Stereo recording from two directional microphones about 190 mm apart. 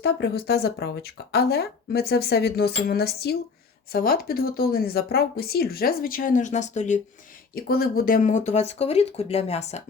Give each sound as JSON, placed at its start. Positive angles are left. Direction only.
{"t": 0.0, "sound": "speech", "side_deg": 60}
{"t": 7.5, "sound": "speech", "side_deg": 50}